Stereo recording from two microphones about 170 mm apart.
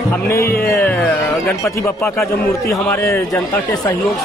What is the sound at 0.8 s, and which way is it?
A man's voice, 10° left (ahead or behind).